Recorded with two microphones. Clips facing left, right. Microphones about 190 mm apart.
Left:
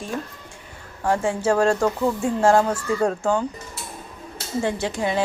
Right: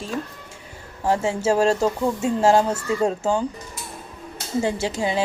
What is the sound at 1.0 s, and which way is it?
A woman's voice, 25° right (ahead or behind).